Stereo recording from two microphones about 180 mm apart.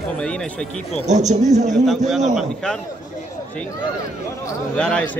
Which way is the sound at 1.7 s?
Centre (ahead or behind).